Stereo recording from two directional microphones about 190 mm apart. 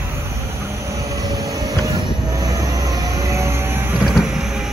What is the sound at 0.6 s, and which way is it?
Train, 15° right (ahead or behind).